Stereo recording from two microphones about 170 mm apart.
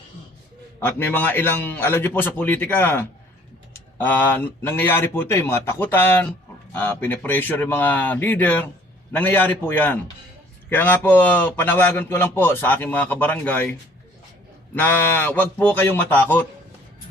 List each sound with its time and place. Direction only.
0.8 s a man's voice: 10° left (ahead or behind)
14.8 s a man's voice: 10° left (ahead or behind)